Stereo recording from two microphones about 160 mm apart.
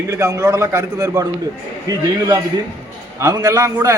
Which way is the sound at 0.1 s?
20° right (ahead or behind).